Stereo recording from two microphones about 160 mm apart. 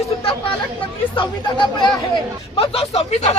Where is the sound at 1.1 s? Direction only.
30° left (ahead or behind).